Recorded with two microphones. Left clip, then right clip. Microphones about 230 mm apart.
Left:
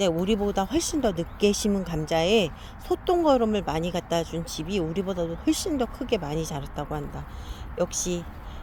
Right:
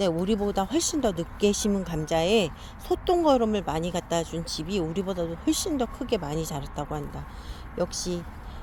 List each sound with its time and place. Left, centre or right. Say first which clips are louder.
0.0 s speech: left 1 dB; centre
7.9 s speech: left 2 dB; right